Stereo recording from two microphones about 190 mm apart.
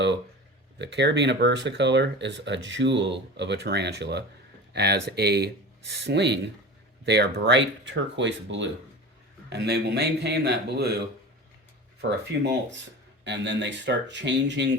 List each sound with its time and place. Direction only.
0.8 s speech: 65° right (ahead or behind)
9.5 s speech: 60° right (ahead or behind)
12.1 s speech: 65° right (ahead or behind)